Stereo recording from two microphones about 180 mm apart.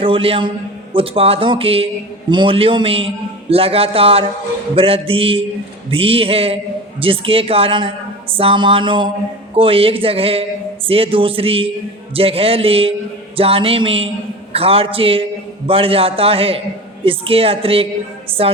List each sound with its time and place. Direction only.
0.0 s a man's voice: 30° right (ahead or behind)